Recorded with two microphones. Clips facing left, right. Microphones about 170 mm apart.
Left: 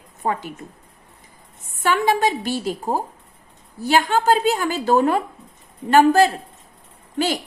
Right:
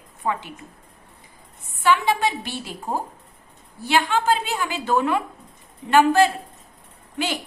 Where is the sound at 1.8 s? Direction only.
45° left (ahead or behind).